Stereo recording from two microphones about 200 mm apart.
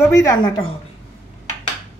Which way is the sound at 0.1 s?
15° left (ahead or behind).